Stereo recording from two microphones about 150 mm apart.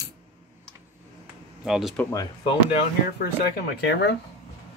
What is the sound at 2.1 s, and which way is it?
Speech, 35° left (ahead or behind).